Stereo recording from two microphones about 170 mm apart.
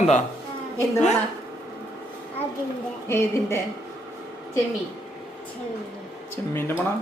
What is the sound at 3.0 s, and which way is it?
Speech, 15° left (ahead or behind).